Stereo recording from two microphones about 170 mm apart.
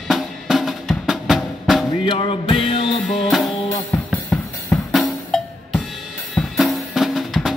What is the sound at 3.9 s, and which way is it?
Drum kit, 5° left (ahead or behind).